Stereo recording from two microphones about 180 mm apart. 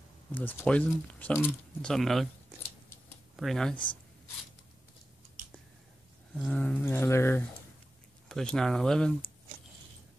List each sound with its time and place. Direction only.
0.3 s speech: 10° left (ahead or behind)
3.3 s speech: centre (ahead or behind)
3.7 s speech: 25° left (ahead or behind)
6.4 s speech: 5° left (ahead or behind)
8.3 s speech: 5° left (ahead or behind)